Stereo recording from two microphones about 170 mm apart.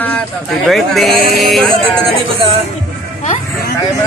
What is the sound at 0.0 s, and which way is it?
Speech, 5° left (ahead or behind).